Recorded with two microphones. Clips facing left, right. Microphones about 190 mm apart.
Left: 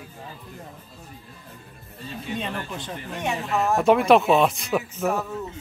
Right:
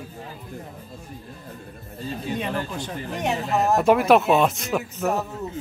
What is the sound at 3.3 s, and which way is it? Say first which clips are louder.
Speech: right 2 dB; 40° right (ahead or behind).